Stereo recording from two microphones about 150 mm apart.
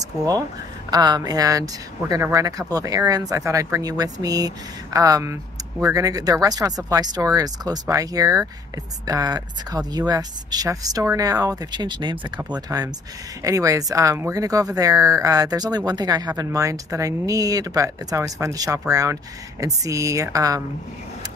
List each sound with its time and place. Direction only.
0.8 s speech: 25° right (ahead or behind)